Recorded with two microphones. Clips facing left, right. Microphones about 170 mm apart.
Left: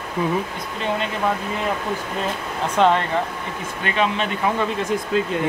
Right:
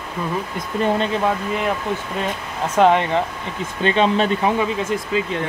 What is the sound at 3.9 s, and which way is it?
Speech, 30° right (ahead or behind).